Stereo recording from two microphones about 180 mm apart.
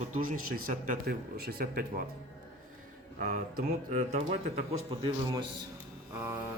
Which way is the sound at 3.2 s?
50° right (ahead or behind).